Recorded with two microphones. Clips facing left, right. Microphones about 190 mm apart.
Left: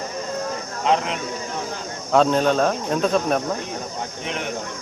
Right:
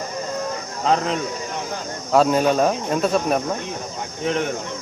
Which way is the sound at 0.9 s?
40° right (ahead or behind).